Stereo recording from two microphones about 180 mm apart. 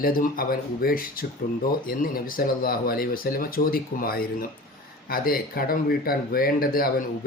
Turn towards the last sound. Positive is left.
turn(degrees=55)  # may be behind; listen again after turning